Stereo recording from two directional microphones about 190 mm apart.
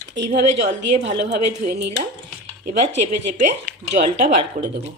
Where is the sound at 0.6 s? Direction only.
40° right (ahead or behind).